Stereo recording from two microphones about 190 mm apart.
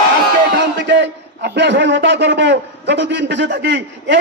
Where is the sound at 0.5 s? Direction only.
70° right (ahead or behind).